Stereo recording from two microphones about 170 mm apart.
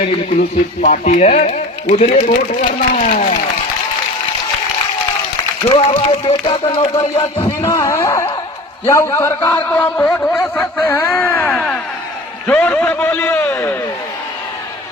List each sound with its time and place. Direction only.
0.8 s speech: 50° left (ahead or behind)
5.6 s a man's voice: 30° left (ahead or behind); by 11.4 s 15° left (ahead or behind)
11.4 s music: centre (ahead or behind)
12.5 s a man's voice: 10° left (ahead or behind)